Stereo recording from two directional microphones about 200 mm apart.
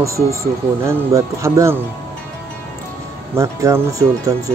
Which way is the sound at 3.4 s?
15° right (ahead or behind).